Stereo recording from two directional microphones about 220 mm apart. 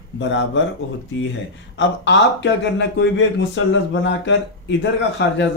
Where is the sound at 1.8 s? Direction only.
55° left (ahead or behind).